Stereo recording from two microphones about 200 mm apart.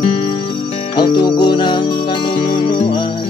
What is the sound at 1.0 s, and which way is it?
Music, 20° left (ahead or behind).